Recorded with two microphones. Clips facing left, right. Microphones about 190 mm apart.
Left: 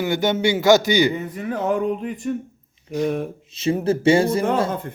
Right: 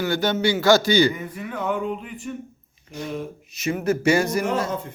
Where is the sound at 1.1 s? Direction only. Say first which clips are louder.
Left 5 dB; 35° left (ahead or behind).